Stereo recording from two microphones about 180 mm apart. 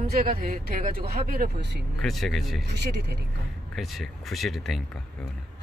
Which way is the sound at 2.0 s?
Centre (ahead or behind).